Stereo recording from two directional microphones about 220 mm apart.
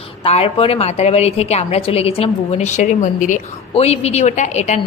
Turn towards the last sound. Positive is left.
turn(degrees=30)  # may be behind; listen again after turning